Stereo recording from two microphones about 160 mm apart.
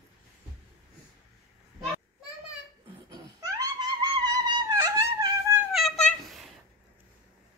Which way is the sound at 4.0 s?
25° right (ahead or behind).